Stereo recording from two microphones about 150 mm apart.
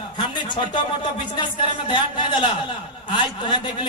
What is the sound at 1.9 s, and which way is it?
Speech, 30° left (ahead or behind).